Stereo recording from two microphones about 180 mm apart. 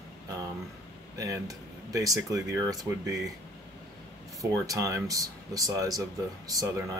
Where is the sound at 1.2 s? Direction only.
20° right (ahead or behind).